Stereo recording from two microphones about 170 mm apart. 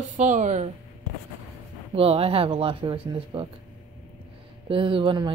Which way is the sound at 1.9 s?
35° right (ahead or behind).